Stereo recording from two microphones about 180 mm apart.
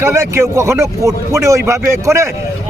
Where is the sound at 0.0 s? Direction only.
15° right (ahead or behind).